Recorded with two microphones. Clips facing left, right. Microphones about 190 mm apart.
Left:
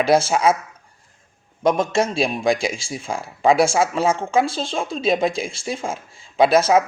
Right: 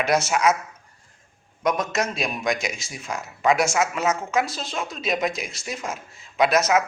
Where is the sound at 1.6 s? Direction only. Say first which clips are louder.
Left 5 dB; 30° left (ahead or behind).